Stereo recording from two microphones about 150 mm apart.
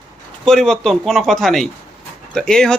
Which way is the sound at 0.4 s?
5° left (ahead or behind).